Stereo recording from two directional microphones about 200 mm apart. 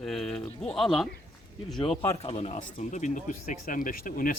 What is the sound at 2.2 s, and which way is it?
Speech, 30° left (ahead or behind).